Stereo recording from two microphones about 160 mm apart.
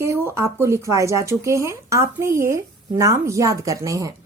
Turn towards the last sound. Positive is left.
turn(degrees=-20)  # may be behind; listen again after turning